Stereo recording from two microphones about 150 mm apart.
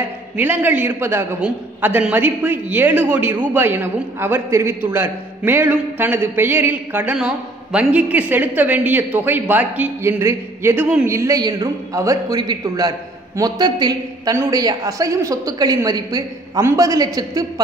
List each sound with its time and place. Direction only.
0.4 s a man's voice: 15° right (ahead or behind)
11.1 s a woman's voice: 20° right (ahead or behind)